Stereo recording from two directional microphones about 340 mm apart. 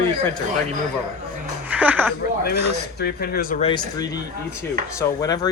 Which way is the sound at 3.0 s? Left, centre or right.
Left.